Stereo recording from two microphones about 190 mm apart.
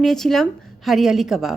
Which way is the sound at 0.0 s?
Centre (ahead or behind).